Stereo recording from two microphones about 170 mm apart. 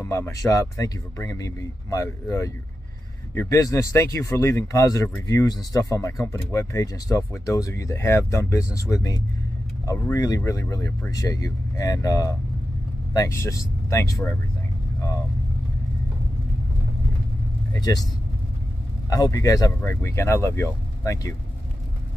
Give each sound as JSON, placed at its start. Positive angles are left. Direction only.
{"t": 0.0, "sound": "speech", "side_deg": 15}
{"t": 17.7, "sound": "speech", "side_deg": 25}
{"t": 19.0, "sound": "speech", "side_deg": 20}